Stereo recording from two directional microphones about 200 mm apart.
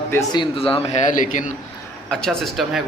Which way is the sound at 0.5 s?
30° left (ahead or behind).